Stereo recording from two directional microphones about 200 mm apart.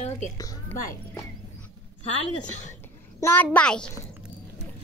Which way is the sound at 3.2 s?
10° left (ahead or behind).